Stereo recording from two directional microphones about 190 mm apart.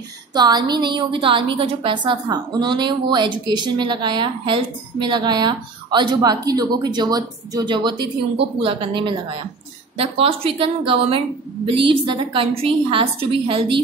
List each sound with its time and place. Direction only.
0.3 s a woman's voice: 20° right (ahead or behind)